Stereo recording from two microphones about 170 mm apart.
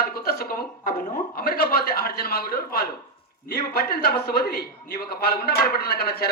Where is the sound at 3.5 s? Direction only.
70° left (ahead or behind).